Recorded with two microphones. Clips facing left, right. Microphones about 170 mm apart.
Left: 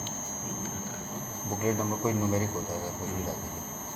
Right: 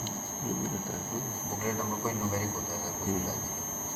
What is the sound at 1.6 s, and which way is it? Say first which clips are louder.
Speech: left 5 dB; 15° left (ahead or behind).